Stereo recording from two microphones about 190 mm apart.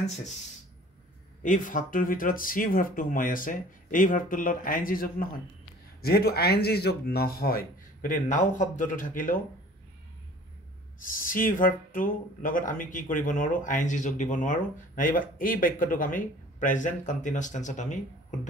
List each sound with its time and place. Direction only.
1.4 s speech: 45° left (ahead or behind)
11.0 s speech: 45° left (ahead or behind)